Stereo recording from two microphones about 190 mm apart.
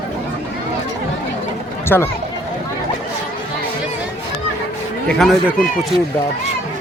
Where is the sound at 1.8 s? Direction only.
10° left (ahead or behind).